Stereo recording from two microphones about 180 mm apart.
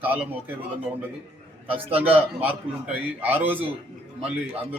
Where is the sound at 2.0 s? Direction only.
10° right (ahead or behind).